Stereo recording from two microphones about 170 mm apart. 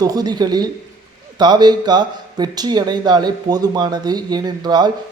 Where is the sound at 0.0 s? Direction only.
20° right (ahead or behind).